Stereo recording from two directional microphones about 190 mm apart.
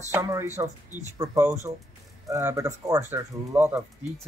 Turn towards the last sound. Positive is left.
turn(degrees=-10)  # may be behind; listen again after turning